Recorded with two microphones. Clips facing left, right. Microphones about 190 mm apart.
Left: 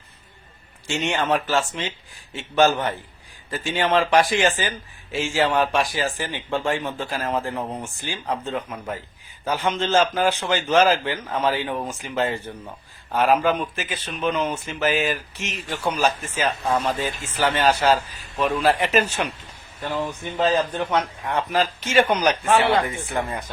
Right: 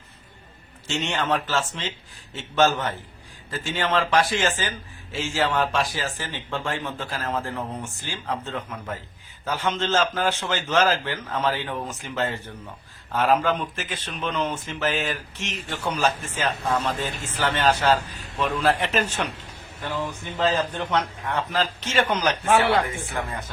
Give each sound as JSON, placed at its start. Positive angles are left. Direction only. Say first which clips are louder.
{"t": 0.9, "sound": "speech", "louder": "left 3 dB", "side_deg": 10}